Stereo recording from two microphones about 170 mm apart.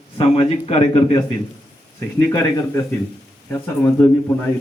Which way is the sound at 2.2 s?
15° left (ahead or behind).